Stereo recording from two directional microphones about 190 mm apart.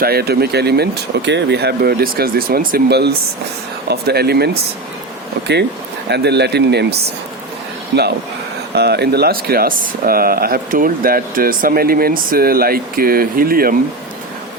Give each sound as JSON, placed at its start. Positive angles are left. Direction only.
{"t": 0.0, "sound": "speech", "side_deg": -55}
{"t": 6.1, "sound": "speech", "side_deg": -60}
{"t": 8.7, "sound": "speech", "side_deg": -60}